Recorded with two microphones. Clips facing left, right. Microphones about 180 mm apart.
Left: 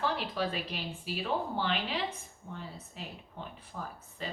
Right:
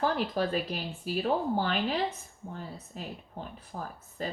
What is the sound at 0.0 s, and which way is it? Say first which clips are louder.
Speech: right 4 dB; 45° right (ahead or behind).